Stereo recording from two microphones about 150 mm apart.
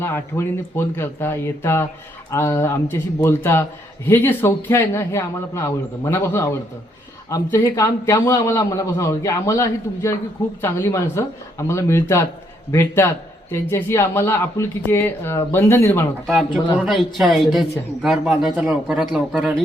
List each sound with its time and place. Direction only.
0.0 s a man's voice: 15° left (ahead or behind)
17.2 s a man's voice: centre (ahead or behind)